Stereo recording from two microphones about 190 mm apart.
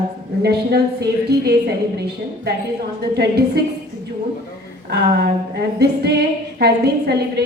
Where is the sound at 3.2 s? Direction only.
60° right (ahead or behind).